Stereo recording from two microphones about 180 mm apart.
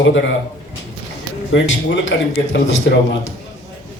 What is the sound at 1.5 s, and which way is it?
A man's voice, 90° left.